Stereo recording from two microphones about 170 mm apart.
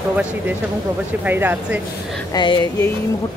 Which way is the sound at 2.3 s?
25° left (ahead or behind).